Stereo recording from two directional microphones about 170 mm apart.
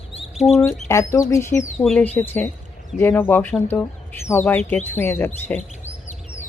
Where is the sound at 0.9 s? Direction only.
20° left (ahead or behind).